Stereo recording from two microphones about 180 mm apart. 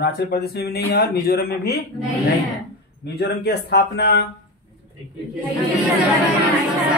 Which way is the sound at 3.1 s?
65° left (ahead or behind).